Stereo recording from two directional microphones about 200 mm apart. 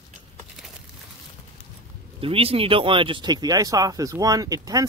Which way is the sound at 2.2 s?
30° right (ahead or behind).